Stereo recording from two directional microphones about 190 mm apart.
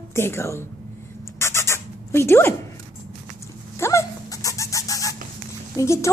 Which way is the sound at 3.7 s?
15° left (ahead or behind).